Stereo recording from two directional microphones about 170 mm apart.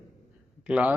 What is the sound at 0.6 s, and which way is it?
Speech, 5° right (ahead or behind).